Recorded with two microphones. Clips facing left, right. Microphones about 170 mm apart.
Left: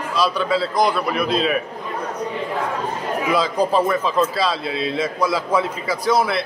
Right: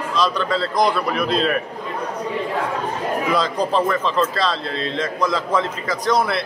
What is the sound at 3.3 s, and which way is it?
A man's voice, 5° left (ahead or behind).